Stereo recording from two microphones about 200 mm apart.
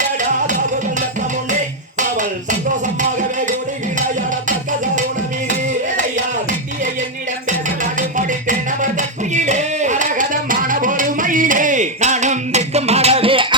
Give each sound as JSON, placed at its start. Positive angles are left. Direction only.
{"t": 2.0, "sound": "music", "side_deg": -40}
{"t": 7.9, "sound": "music", "side_deg": -40}